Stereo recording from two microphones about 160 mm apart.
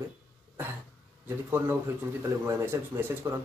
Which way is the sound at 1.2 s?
15° right (ahead or behind).